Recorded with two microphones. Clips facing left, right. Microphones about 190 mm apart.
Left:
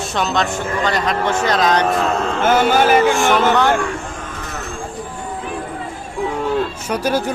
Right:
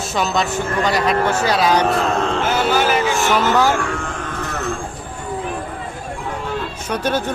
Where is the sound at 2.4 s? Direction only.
50° left (ahead or behind).